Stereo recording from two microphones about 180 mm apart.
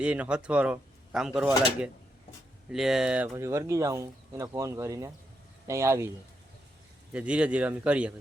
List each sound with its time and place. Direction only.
0.0 s speech: 5° right (ahead or behind)
2.6 s speech: centre (ahead or behind)
3.3 s speech: 15° right (ahead or behind)
7.1 s speech: 5° right (ahead or behind)